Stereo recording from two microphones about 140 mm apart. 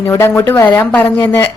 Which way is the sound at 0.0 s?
20° left (ahead or behind).